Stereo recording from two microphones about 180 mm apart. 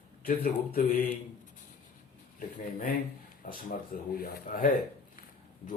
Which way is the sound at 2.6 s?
50° left (ahead or behind).